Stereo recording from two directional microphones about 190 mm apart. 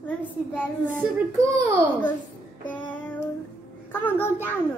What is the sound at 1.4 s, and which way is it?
Speech, 15° right (ahead or behind).